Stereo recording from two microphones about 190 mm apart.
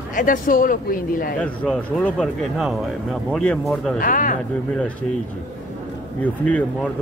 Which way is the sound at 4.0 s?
45° left (ahead or behind).